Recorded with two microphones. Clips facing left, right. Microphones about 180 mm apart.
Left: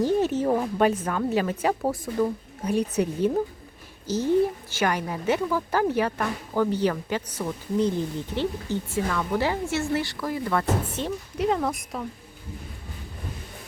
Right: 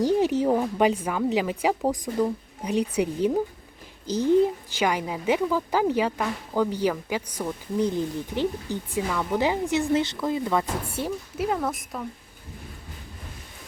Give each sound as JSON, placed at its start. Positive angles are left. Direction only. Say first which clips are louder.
{"t": 0.2, "sound": "a woman's voice", "louder": "right 1 dB", "side_deg": -15}